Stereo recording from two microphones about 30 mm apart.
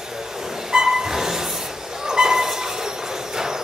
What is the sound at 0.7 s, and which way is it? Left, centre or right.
Music, right.